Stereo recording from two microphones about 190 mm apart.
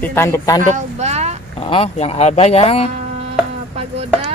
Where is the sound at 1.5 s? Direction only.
30° left (ahead or behind).